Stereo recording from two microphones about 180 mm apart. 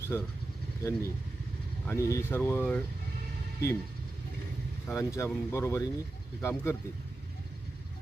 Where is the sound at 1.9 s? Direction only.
15° left (ahead or behind).